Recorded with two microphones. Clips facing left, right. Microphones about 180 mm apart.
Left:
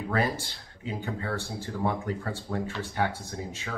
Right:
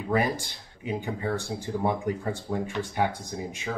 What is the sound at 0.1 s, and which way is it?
Speech, 15° right (ahead or behind).